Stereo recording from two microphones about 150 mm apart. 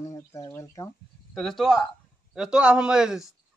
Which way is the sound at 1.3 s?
Centre (ahead or behind).